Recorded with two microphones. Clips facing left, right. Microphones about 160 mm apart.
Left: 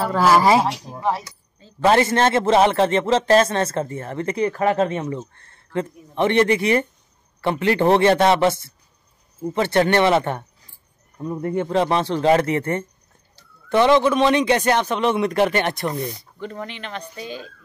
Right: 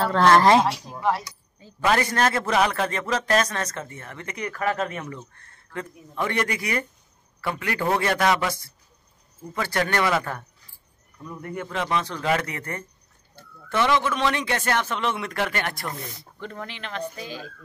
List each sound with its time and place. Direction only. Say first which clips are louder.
0.0 s speech: left 1 dB; 5° left (ahead or behind)
1.8 s a man's voice: left 6 dB; 30° left (ahead or behind)
16.0 s speech: left 8 dB; centre (ahead or behind)